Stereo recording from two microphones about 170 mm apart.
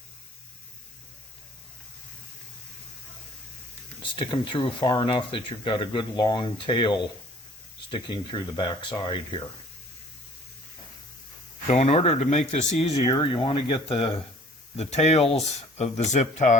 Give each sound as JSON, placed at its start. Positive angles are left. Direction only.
{"t": 4.0, "sound": "speech", "side_deg": 30}
{"t": 11.7, "sound": "speech", "side_deg": 40}